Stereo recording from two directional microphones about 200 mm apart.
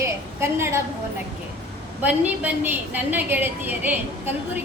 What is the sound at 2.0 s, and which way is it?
A woman's voice, 10° right (ahead or behind).